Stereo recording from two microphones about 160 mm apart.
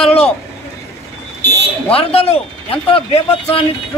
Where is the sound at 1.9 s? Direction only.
40° left (ahead or behind).